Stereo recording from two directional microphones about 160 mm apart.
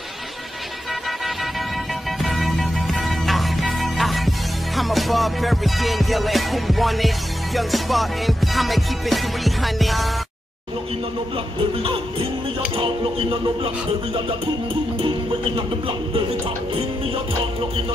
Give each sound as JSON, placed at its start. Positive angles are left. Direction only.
{"t": 2.2, "sound": "music", "side_deg": 0}
{"t": 11.8, "sound": "a sound", "side_deg": -30}
{"t": 15.0, "sound": "music", "side_deg": -30}